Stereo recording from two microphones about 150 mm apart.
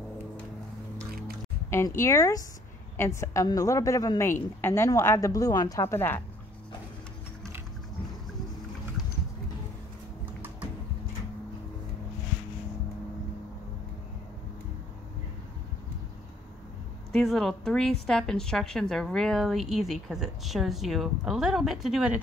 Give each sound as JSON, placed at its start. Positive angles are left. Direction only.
{"t": 2.0, "sound": "a woman's voice", "side_deg": 20}
{"t": 17.1, "sound": "a woman's voice", "side_deg": 0}